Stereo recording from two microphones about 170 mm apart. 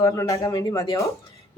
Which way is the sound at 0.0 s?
20° left (ahead or behind).